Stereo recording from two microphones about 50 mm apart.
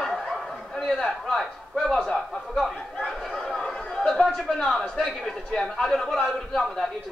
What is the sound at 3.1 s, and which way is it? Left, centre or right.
Chatter, centre.